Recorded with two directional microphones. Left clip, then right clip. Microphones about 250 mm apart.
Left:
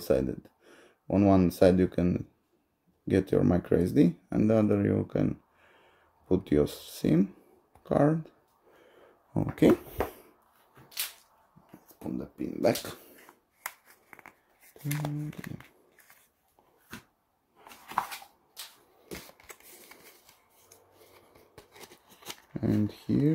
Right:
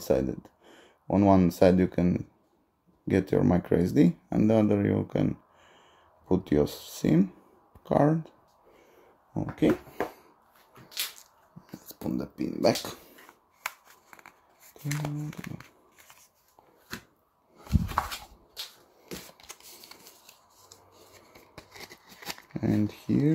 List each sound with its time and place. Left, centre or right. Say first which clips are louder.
0.0 s speech: right 1 dB; centre
9.3 s speech: left 2 dB; left
12.0 s speech: right 4 dB; right
12.5 s speech: right 2 dB; centre
13.1 s shuffling cards: right 2 dB; centre
17.6 s a sound: right 2 dB; centre
21.5 s shuffling cards: right 5 dB; centre